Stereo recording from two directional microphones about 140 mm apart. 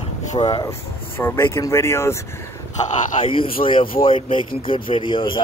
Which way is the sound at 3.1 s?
40° left (ahead or behind).